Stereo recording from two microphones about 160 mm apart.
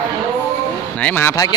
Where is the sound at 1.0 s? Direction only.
10° left (ahead or behind).